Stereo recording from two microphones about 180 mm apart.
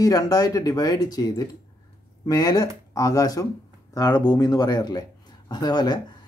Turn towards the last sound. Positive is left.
turn(degrees=25)  # may be behind; listen again after turning